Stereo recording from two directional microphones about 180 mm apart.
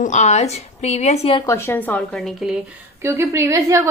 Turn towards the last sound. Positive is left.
turn(degrees=-15)  # may be behind; listen again after turning